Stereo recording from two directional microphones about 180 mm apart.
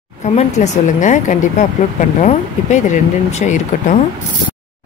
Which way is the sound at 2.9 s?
40° left (ahead or behind).